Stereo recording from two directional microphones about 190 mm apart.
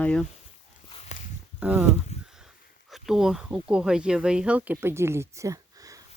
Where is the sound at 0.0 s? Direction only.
5° left (ahead or behind).